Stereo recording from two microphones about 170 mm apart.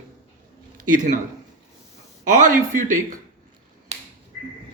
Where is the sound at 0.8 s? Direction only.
50° right (ahead or behind).